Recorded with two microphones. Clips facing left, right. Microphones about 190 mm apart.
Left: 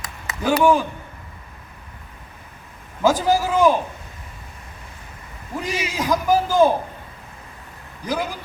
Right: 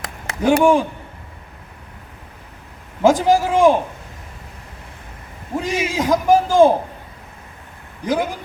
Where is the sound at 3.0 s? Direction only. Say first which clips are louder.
Right 4 dB; 25° right (ahead or behind).